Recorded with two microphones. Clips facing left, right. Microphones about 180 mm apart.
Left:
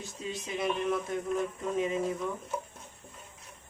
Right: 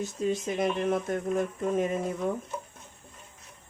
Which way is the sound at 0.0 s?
45° right (ahead or behind).